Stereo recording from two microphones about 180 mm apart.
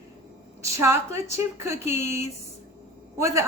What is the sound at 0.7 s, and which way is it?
Speech, 15° right (ahead or behind).